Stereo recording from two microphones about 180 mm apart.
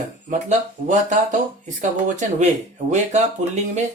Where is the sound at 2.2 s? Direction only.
40° right (ahead or behind).